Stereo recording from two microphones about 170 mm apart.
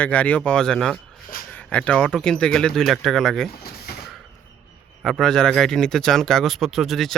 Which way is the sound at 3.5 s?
65° left (ahead or behind).